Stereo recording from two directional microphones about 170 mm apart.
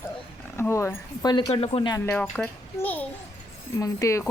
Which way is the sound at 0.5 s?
15° left (ahead or behind).